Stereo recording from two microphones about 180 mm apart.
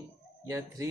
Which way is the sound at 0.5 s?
15° right (ahead or behind).